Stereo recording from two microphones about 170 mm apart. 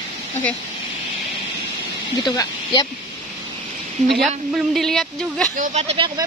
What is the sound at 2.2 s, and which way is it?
Speech, 25° left (ahead or behind).